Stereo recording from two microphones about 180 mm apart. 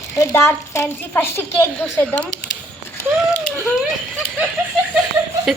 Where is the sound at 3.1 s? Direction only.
5° left (ahead or behind).